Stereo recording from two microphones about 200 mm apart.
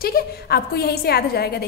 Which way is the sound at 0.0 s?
50° left (ahead or behind).